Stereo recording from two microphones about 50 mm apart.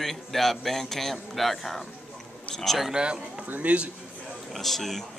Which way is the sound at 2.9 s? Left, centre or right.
Centre.